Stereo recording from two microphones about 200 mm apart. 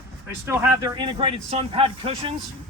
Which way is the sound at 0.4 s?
15° right (ahead or behind).